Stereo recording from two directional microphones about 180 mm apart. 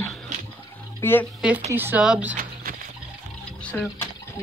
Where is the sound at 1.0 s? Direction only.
10° left (ahead or behind).